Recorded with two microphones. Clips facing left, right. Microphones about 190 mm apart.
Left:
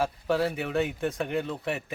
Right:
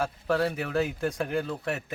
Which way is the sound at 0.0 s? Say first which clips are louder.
Even; centre (ahead or behind).